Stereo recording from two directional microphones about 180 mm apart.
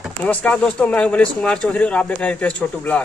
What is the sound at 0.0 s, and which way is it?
Speech, 5° left (ahead or behind).